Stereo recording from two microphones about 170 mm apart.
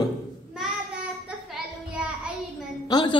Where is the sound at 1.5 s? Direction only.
5° right (ahead or behind).